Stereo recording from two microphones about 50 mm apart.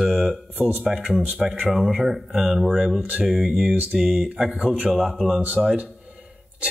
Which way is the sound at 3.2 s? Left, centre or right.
Centre.